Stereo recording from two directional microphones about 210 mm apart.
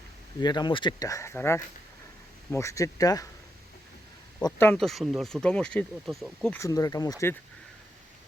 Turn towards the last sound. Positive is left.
turn(degrees=15)  # may be behind; listen again after turning